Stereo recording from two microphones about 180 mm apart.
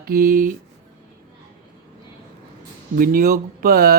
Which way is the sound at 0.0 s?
50° right (ahead or behind).